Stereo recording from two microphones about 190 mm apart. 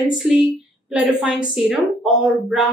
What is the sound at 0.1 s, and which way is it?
A woman's voice, centre (ahead or behind).